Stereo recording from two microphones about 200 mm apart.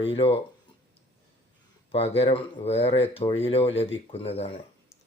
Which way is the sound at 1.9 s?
30° left (ahead or behind).